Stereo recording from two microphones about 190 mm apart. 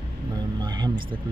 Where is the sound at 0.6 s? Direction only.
20° right (ahead or behind).